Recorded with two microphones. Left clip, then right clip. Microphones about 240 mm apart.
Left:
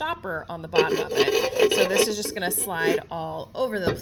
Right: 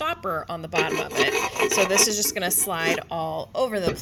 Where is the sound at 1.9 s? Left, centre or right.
Right.